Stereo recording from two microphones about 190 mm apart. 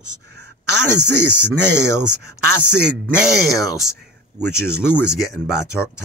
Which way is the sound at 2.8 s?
5° right (ahead or behind).